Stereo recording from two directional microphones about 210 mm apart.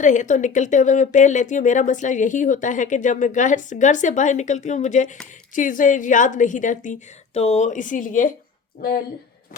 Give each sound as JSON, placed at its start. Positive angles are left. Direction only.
{"t": 0.0, "sound": "speech", "side_deg": 35}